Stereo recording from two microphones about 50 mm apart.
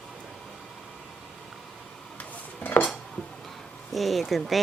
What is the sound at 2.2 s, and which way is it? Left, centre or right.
Dishes, left.